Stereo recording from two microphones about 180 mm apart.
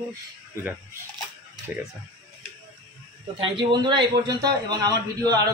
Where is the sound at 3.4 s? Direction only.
25° right (ahead or behind).